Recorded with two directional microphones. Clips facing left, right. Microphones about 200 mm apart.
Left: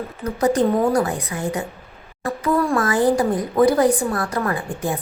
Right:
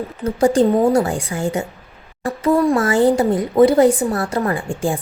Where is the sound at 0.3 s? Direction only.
30° right (ahead or behind).